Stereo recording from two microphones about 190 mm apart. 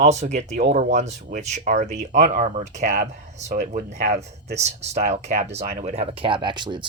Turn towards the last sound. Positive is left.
turn(degrees=-25)  # may be behind; listen again after turning